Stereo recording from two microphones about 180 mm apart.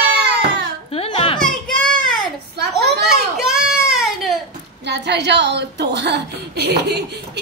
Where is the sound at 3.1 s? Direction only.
5° right (ahead or behind).